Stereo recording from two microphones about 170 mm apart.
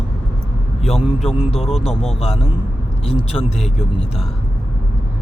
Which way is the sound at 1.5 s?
35° left (ahead or behind).